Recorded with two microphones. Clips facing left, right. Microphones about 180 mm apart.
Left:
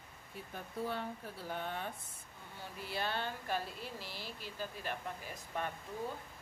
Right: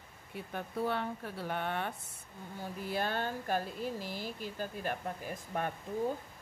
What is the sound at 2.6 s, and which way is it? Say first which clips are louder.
Speech: right 5 dB; 45° right (ahead or behind).